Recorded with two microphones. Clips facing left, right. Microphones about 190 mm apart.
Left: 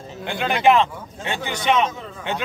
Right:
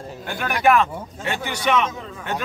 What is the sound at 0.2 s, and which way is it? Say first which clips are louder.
Speech: left 2 dB; 20° left (ahead or behind).